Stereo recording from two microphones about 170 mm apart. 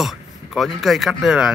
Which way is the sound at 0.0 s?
Centre (ahead or behind).